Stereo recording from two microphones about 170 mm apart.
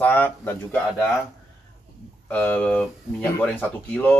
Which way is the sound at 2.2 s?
10° left (ahead or behind).